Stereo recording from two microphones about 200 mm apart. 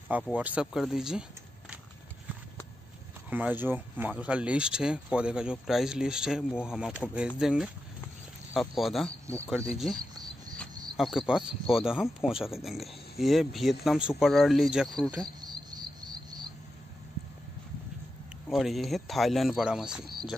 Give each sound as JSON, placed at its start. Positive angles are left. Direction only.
{"t": 0.4, "sound": "speech", "side_deg": -5}
{"t": 3.3, "sound": "speech", "side_deg": -10}
{"t": 11.0, "sound": "speech", "side_deg": 0}
{"t": 15.4, "sound": "cricket", "side_deg": -20}
{"t": 18.5, "sound": "speech", "side_deg": 0}